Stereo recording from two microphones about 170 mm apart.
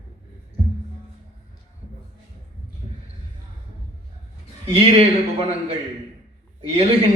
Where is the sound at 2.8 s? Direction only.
35° right (ahead or behind).